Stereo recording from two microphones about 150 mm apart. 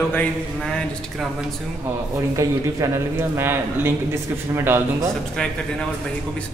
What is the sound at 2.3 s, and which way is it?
Speech, 20° right (ahead or behind).